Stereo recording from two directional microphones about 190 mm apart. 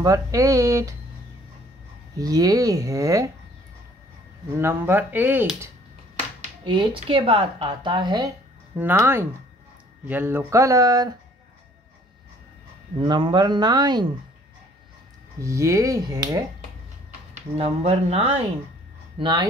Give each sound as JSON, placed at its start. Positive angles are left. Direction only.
{"t": 0.0, "sound": "speech", "side_deg": -15}
{"t": 2.1, "sound": "speech", "side_deg": -20}
{"t": 4.6, "sound": "speech", "side_deg": -10}
{"t": 6.6, "sound": "speech", "side_deg": -25}
{"t": 8.7, "sound": "speech", "side_deg": -10}
{"t": 13.0, "sound": "speech", "side_deg": -25}
{"t": 15.4, "sound": "speech", "side_deg": -15}
{"t": 17.3, "sound": "speech", "side_deg": -35}